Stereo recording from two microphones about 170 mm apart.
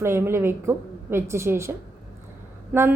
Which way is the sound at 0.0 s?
15° right (ahead or behind).